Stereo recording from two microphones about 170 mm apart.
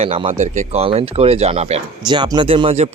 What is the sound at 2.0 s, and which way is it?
Speech, 25° right (ahead or behind).